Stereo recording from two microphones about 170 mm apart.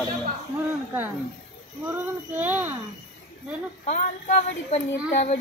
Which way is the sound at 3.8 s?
40° left (ahead or behind).